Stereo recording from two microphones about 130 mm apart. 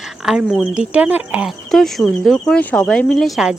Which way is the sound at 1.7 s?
Centre (ahead or behind).